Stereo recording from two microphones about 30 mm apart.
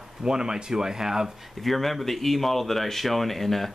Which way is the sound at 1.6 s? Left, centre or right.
Centre.